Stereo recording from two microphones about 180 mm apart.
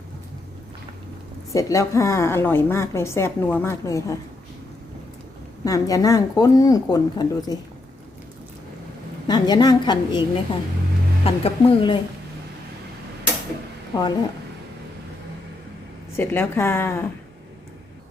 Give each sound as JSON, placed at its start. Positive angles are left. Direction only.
{"t": 1.5, "sound": "a woman's voice", "side_deg": 15}
{"t": 5.6, "sound": "speech", "side_deg": 20}
{"t": 9.2, "sound": "speech", "side_deg": 25}
{"t": 13.9, "sound": "speech", "side_deg": 20}
{"t": 16.1, "sound": "a woman's voice", "side_deg": 10}